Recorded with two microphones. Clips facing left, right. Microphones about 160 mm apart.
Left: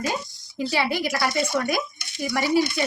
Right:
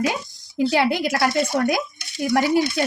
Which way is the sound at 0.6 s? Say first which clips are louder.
Right 5 dB; 60° right (ahead or behind).